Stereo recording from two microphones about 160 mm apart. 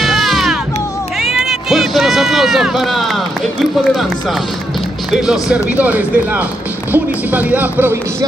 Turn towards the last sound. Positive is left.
turn(degrees=-10)  # may be behind; listen again after turning